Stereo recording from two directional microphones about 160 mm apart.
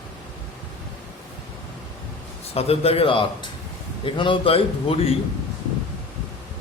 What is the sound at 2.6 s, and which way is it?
A man's voice, 40° left (ahead or behind).